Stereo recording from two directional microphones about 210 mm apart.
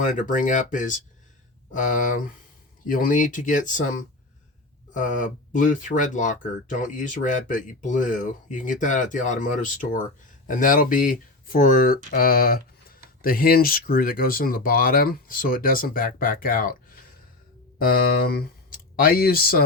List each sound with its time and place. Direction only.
0.0 s speech: 40° left (ahead or behind)